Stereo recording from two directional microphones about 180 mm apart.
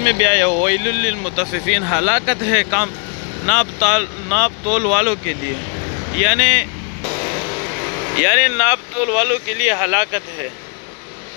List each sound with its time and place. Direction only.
0.0 s speech: 20° right (ahead or behind)
1.3 s speech: centre (ahead or behind)
2.0 s speech: 15° right (ahead or behind)
6.2 s speech: centre (ahead or behind)
8.2 s speech: 15° right (ahead or behind)